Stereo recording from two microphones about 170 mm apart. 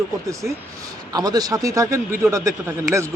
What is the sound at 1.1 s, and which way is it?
Speech, 20° right (ahead or behind).